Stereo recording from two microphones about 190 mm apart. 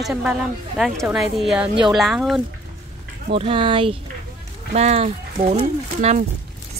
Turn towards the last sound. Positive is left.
turn(degrees=-40)  # may be behind; listen again after turning